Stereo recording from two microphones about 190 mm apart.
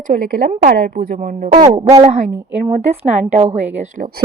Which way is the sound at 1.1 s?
35° right (ahead or behind).